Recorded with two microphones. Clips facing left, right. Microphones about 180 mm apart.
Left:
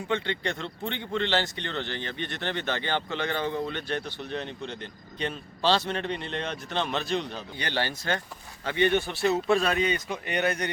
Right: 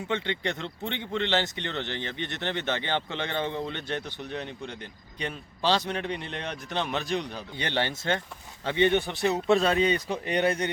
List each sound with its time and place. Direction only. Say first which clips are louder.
0.1 s a man's voice: left 1 dB; 20° right (ahead or behind)